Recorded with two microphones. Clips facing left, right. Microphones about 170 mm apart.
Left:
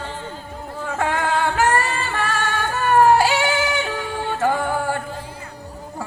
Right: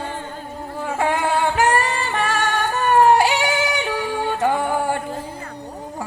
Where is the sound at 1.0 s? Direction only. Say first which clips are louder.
Right 1 dB; 15° right (ahead or behind).